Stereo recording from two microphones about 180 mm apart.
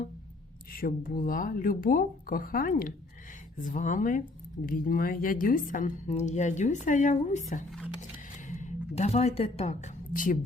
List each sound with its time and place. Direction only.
0.7 s a woman's voice: 50° left (ahead or behind)